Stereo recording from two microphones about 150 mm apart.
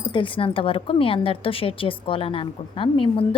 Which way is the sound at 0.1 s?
35° left (ahead or behind).